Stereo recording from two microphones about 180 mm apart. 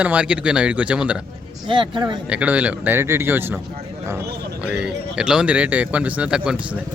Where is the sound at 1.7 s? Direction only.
25° right (ahead or behind).